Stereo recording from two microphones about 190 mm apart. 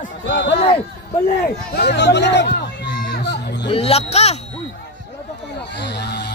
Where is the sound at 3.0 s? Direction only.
55° left (ahead or behind).